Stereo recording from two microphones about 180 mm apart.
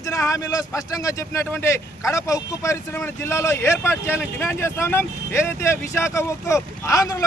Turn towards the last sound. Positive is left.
turn(degrees=20)  # may be behind; listen again after turning